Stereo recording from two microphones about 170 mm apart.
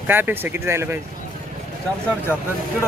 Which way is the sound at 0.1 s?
10° right (ahead or behind).